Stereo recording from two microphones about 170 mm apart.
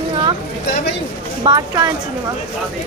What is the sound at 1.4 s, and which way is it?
Speech, 25° right (ahead or behind).